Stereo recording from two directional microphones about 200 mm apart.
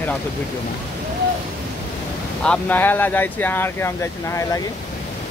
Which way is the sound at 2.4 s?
5° left (ahead or behind).